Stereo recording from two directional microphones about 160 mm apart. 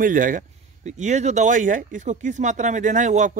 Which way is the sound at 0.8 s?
45° right (ahead or behind).